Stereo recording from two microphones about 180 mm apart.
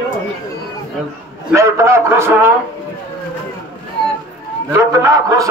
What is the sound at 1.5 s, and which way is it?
Speech, 15° right (ahead or behind).